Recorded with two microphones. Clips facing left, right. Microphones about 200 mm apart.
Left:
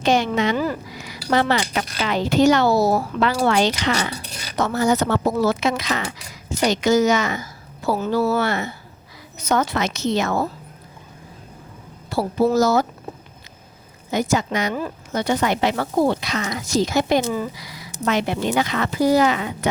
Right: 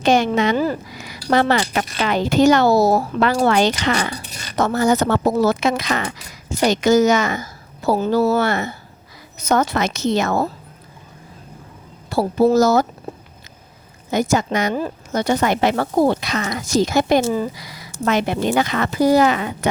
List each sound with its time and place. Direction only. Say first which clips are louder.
0.0 s speech: right 3 dB; 50° right (ahead or behind)
0.5 s speech: right 3 dB; 30° right (ahead or behind)
1.3 s speech: right 3 dB; 50° right (ahead or behind)
4.2 s speech: even; centre (ahead or behind)
4.5 s speech: right 2 dB; 50° right (ahead or behind)
7.9 s speech: right 3 dB; 35° right (ahead or behind)
12.1 s speech: right 3 dB; 45° right (ahead or behind)
14.1 s speech: right 2 dB; 45° right (ahead or behind)